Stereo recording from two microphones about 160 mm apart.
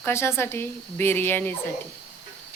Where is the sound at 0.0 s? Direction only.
15° left (ahead or behind).